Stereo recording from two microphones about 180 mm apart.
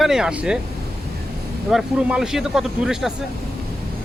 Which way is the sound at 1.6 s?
Centre (ahead or behind).